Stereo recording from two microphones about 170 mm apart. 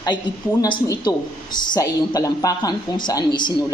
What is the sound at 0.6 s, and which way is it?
Speech, 20° left (ahead or behind).